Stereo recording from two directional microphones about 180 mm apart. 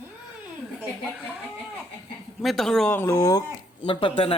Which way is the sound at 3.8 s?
30° left (ahead or behind).